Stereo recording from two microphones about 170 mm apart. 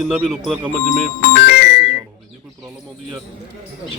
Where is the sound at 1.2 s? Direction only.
70° left (ahead or behind).